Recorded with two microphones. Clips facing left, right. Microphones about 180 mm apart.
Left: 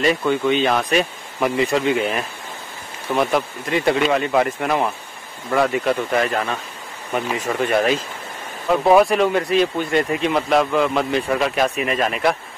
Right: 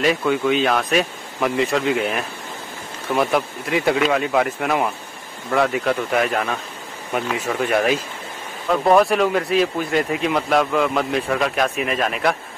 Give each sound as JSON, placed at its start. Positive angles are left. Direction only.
{"t": 0.0, "sound": "speech", "side_deg": -5}